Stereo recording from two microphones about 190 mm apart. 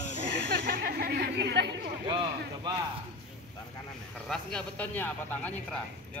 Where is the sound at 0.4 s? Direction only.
60° right (ahead or behind).